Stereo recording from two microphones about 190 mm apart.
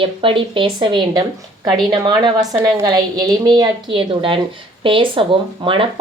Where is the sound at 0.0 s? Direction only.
25° right (ahead or behind).